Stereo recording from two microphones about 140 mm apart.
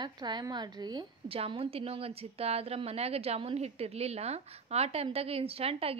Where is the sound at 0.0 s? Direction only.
30° right (ahead or behind).